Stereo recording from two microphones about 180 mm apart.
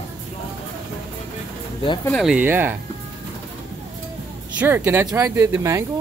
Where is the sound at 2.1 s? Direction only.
5° right (ahead or behind).